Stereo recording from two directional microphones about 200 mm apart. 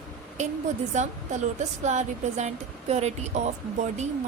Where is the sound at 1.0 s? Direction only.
35° right (ahead or behind).